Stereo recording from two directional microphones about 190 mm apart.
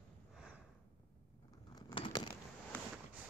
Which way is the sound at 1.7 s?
25° left (ahead or behind).